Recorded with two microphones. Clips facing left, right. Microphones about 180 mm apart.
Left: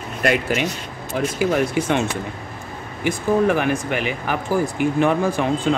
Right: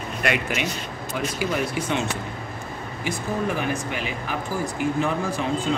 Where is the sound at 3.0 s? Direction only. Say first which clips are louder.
Left 8 dB; 65° left (ahead or behind).